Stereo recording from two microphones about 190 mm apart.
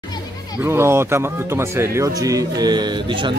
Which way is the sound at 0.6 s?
15° right (ahead or behind).